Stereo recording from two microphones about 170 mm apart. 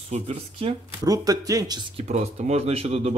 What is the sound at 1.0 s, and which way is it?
Speech, 20° right (ahead or behind).